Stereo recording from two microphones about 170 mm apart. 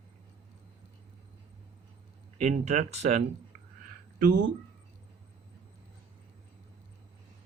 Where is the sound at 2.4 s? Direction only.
45° right (ahead or behind).